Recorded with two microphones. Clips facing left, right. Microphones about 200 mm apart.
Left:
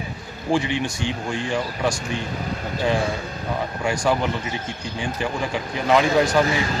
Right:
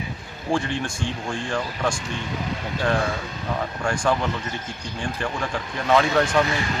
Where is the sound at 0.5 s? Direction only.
5° left (ahead or behind).